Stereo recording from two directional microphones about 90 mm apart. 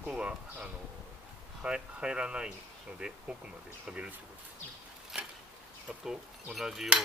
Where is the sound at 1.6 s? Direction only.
10° right (ahead or behind).